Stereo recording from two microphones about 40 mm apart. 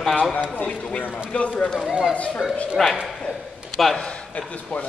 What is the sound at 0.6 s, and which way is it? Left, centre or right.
Speech, left.